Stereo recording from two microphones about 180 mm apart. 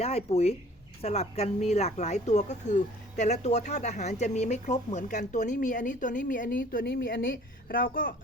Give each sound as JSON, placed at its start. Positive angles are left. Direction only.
{"t": 0.0, "sound": "speech", "side_deg": 35}